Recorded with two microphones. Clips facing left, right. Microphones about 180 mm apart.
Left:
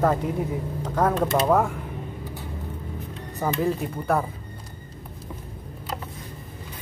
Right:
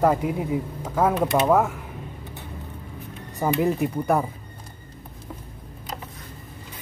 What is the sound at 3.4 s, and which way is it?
Speech, 15° right (ahead or behind).